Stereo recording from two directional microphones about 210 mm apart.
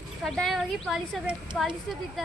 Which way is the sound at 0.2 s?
Centre (ahead or behind).